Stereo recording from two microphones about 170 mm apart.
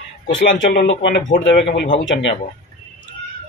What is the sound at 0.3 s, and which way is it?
Speech, 90° left.